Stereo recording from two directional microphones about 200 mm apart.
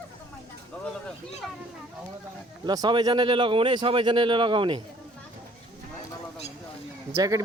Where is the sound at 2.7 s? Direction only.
20° right (ahead or behind).